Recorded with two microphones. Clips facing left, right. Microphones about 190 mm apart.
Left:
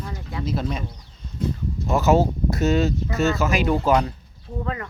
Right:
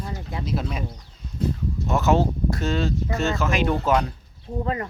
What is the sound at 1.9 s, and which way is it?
Speech, centre (ahead or behind).